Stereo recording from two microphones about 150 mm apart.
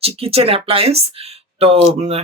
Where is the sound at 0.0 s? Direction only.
40° right (ahead or behind).